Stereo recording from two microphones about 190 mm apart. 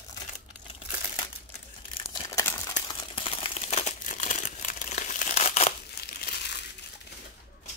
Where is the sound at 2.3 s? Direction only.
15° left (ahead or behind).